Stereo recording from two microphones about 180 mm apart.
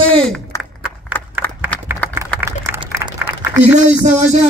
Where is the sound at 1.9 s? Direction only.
10° right (ahead or behind).